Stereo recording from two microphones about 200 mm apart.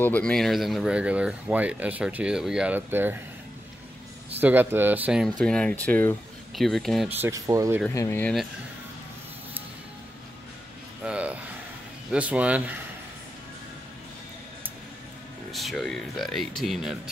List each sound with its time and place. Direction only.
0.0 s speech: 5° left (ahead or behind); by 3.2 s 10° right (ahead or behind)
4.4 s speech: 10° right (ahead or behind)
5.4 s speech: 5° left (ahead or behind)
7.1 s speech: 10° right (ahead or behind)
7.9 s speech: 15° left (ahead or behind)
11.1 s a sound: 5° right (ahead or behind)
12.1 s speech: 5° right (ahead or behind)
15.5 s speech: centre (ahead or behind)